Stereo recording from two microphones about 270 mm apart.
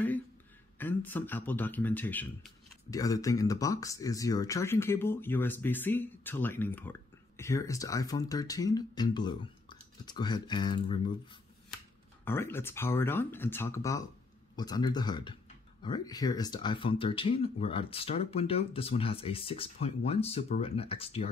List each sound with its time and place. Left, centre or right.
0.7 s a man's voice: centre
12.3 s a man's voice: centre